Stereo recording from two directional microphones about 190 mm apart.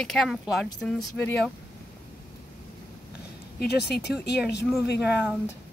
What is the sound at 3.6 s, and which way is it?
Speech, 60° left (ahead or behind).